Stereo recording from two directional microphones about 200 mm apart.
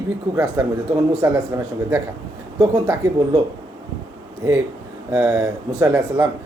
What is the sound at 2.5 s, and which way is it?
Speech, 15° right (ahead or behind).